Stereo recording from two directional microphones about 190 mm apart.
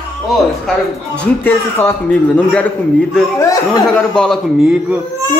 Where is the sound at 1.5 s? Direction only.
10° left (ahead or behind).